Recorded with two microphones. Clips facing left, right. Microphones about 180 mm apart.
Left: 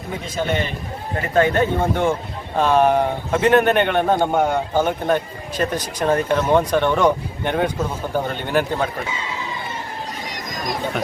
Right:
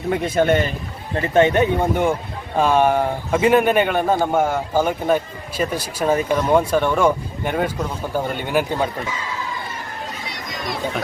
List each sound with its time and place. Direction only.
0.1 s a man's voice: 55° right (ahead or behind)
1.2 s a man's voice: 25° right (ahead or behind)
10.2 s chatter: 45° left (ahead or behind)